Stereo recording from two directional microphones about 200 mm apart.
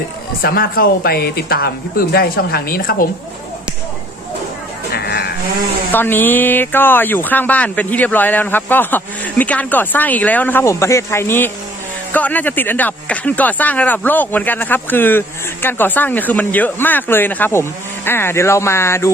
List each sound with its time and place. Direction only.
0.4 s speech: 50° left (ahead or behind)
4.9 s livestock: 55° left (ahead or behind)
5.9 s speech: 10° left (ahead or behind)